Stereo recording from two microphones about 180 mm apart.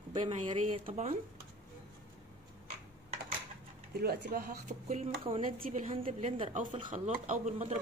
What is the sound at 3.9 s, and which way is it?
Speech, 60° right (ahead or behind).